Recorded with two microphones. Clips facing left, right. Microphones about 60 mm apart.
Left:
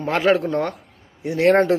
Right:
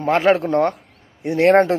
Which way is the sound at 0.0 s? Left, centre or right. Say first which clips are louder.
Right 3 dB; right.